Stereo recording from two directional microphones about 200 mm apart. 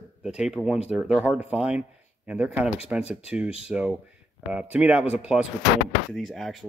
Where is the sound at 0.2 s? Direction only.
5° right (ahead or behind).